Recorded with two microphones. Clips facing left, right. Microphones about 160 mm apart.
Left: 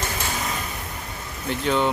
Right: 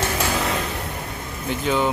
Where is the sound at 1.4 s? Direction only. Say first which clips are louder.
Right 1 dB; centre (ahead or behind).